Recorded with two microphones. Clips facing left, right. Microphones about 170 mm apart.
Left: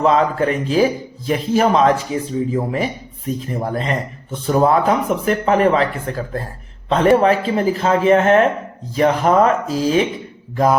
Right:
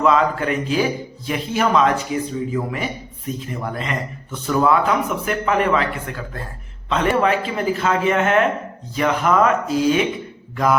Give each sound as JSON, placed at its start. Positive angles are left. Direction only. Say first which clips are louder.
{"t": 0.0, "sound": "a man's voice", "louder": "left 2 dB", "side_deg": 35}